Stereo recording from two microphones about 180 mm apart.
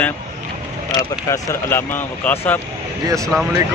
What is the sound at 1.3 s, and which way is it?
Speech, 15° left (ahead or behind).